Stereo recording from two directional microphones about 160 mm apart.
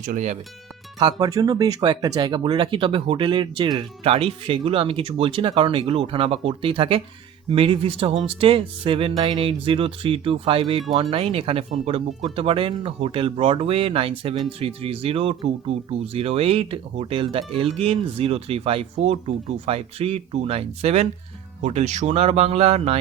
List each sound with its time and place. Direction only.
0.0 s speech: 50° right (ahead or behind)
0.9 s speech: 25° right (ahead or behind); by 23.0 s 40° right (ahead or behind)